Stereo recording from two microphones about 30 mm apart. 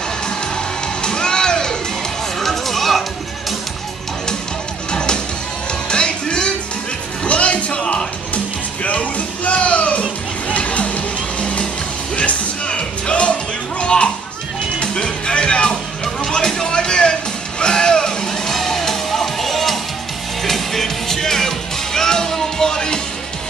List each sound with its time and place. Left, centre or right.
1.0 s music: left
2.4 s music: centre
4.9 s music: left
7.2 s music: left
8.8 s music: left
12.6 s music: left
16.4 s a sound: left
17.6 s music: left
18.5 s music: centre